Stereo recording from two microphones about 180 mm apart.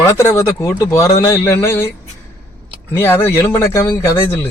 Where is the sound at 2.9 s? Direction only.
10° left (ahead or behind).